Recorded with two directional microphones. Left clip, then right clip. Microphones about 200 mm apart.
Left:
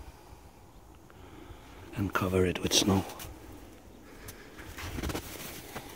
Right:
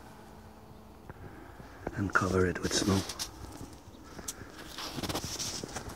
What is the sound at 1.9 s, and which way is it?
Speech, 15° left (ahead or behind).